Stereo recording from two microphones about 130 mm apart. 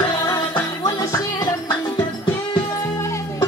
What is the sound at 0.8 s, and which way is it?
Music, 30° left (ahead or behind).